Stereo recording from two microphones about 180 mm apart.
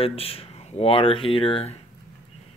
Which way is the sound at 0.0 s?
30° left (ahead or behind).